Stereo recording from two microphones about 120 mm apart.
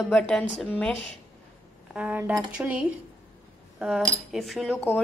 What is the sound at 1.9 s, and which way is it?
A woman's voice, 10° right (ahead or behind).